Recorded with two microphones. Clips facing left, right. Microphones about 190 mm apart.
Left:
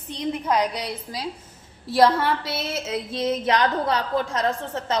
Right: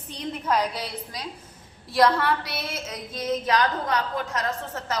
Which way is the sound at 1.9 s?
25° left (ahead or behind).